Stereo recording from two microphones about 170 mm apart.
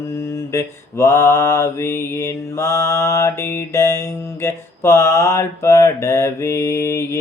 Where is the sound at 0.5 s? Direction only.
15° left (ahead or behind).